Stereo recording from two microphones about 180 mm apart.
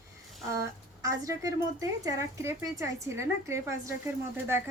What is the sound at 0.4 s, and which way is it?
A woman's voice, 15° right (ahead or behind).